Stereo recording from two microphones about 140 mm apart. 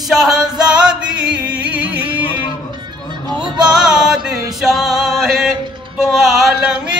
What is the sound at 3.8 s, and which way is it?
Music, 5° right (ahead or behind).